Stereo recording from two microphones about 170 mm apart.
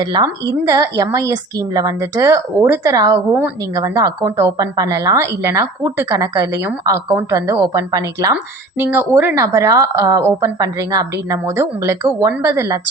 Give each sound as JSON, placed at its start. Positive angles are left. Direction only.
{"t": 0.0, "sound": "a woman's voice", "side_deg": -25}